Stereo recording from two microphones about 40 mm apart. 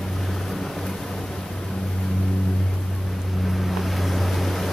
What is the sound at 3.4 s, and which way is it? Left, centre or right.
Boat, centre.